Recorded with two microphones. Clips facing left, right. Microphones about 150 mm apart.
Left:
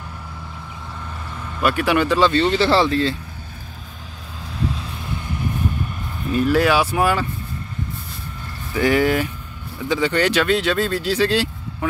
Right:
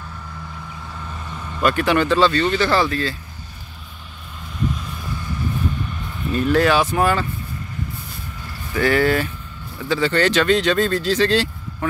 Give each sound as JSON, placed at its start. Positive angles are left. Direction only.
{"t": 1.6, "sound": "speech", "side_deg": 10}
{"t": 2.3, "sound": "speech", "side_deg": 25}
{"t": 4.6, "sound": "vehicle", "side_deg": 30}
{"t": 6.2, "sound": "speech", "side_deg": 5}
{"t": 8.7, "sound": "speech", "side_deg": 15}